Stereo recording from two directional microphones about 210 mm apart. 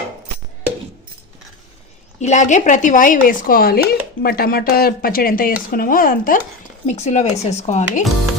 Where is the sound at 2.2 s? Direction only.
35° left (ahead or behind).